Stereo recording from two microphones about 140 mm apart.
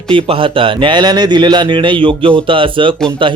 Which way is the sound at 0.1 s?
40° right (ahead or behind).